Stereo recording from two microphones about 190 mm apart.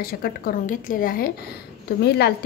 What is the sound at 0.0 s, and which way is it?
A woman's voice, 50° left (ahead or behind).